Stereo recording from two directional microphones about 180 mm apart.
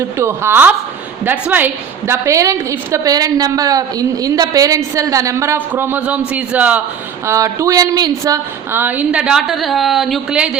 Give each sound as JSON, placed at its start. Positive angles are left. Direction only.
{"t": 0.2, "sound": "a woman's voice", "side_deg": -15}